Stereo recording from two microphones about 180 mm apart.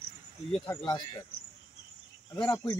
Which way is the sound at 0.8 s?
25° left (ahead or behind).